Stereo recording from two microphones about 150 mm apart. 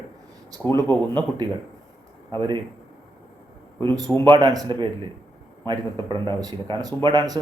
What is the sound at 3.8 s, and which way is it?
Speech, 30° right (ahead or behind).